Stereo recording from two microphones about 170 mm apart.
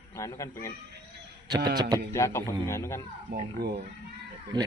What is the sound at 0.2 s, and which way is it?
Speech, 15° left (ahead or behind).